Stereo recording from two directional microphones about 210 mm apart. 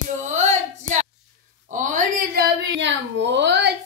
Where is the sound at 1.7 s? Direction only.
35° right (ahead or behind).